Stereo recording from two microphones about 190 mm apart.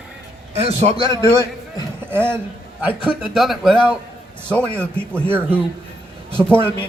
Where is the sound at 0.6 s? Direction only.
30° right (ahead or behind).